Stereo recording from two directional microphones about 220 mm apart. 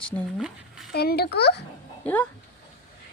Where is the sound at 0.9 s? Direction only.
45° left (ahead or behind).